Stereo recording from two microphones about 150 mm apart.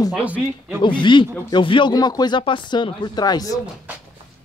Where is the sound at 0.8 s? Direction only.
35° left (ahead or behind).